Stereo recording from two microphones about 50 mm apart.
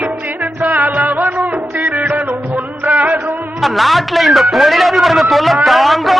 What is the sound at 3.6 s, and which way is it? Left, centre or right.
A man's voice, centre.